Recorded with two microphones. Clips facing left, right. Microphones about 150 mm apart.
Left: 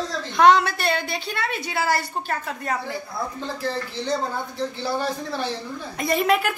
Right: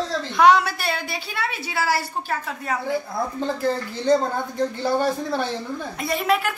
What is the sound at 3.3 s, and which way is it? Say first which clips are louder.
Speech: right 6 dB; 50° right (ahead or behind).